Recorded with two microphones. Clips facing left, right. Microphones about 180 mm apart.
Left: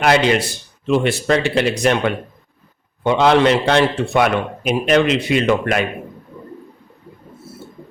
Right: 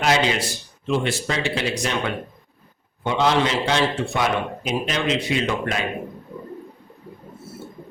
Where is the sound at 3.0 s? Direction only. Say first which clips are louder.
Left 6 dB; 60° left (ahead or behind).